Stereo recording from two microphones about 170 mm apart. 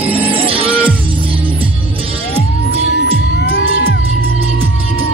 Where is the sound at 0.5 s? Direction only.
10° right (ahead or behind).